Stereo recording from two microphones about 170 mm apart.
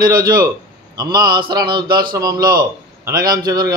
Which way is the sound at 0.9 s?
25° right (ahead or behind).